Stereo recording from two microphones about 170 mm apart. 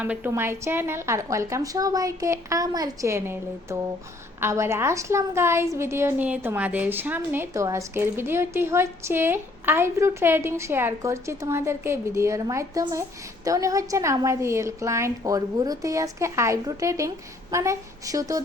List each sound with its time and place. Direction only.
0.0 s a woman's voice: 10° right (ahead or behind)